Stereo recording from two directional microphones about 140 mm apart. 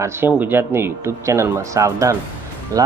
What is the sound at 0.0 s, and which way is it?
Speech, 15° right (ahead or behind).